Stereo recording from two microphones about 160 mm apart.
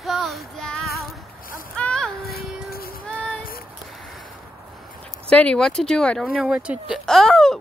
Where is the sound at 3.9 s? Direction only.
Centre (ahead or behind).